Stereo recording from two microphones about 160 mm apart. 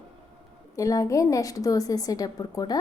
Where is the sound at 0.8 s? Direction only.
20° left (ahead or behind).